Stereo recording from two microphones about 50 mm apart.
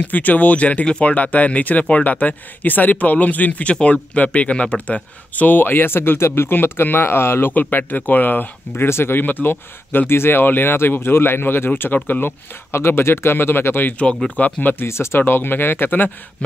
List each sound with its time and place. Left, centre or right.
0.0 s speech: left
1.1 s speech: left
7.5 s speech: left
8.8 s speech: left
14.9 s speech: left